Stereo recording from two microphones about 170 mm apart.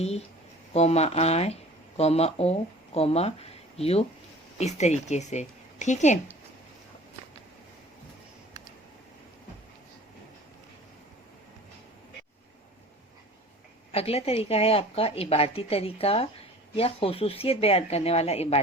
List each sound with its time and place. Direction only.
0.7 s speech: 40° left (ahead or behind)
13.9 s a woman's voice: 35° left (ahead or behind)